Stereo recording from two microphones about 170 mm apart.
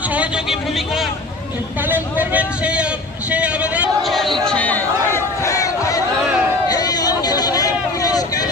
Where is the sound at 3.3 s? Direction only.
10° right (ahead or behind); by 6.0 s 20° left (ahead or behind).